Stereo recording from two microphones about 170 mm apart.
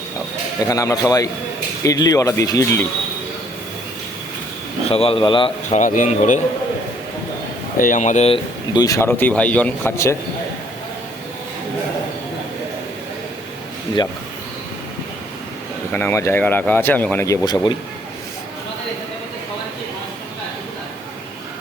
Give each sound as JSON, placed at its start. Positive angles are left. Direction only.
{"t": 0.7, "sound": "speech", "side_deg": 20}
{"t": 4.9, "sound": "speech", "side_deg": 35}
{"t": 5.7, "sound": "speech", "side_deg": 50}
{"t": 7.8, "sound": "speech", "side_deg": 50}
{"t": 8.7, "sound": "speech", "side_deg": 20}
{"t": 15.9, "sound": "speech", "side_deg": 10}